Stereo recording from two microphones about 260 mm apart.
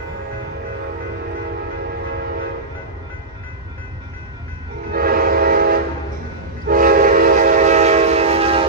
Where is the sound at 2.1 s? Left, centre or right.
Right.